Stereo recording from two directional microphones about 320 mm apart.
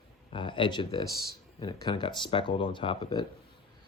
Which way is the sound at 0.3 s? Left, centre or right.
Centre.